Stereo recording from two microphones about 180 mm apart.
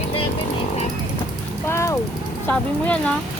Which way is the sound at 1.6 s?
15° left (ahead or behind).